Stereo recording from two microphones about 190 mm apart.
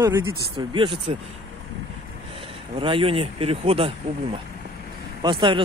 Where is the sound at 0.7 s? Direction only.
25° right (ahead or behind).